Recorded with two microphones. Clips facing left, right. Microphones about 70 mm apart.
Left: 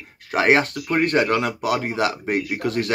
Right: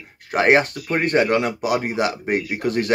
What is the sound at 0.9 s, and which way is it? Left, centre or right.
Speech, right.